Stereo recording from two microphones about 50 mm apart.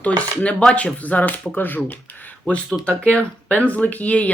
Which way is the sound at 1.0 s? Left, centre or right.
Left.